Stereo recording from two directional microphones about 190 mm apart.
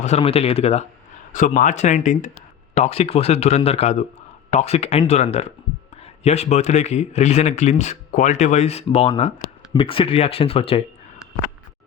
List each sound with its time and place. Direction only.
0.0 s speech: 35° left (ahead or behind)